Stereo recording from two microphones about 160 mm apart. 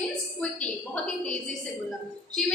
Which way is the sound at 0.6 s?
5° left (ahead or behind).